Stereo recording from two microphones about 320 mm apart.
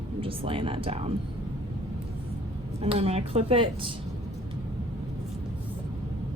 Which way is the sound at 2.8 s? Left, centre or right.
Centre.